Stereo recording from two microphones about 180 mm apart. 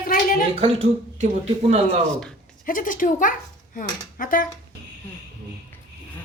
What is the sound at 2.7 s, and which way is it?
Speech, 50° left (ahead or behind).